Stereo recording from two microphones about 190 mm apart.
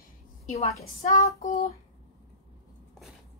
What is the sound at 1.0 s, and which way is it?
Speech, 40° left (ahead or behind).